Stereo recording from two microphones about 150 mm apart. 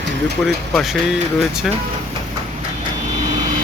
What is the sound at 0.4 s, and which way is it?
Speech, centre (ahead or behind).